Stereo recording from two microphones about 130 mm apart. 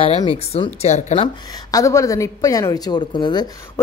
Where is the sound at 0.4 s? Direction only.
50° left (ahead or behind).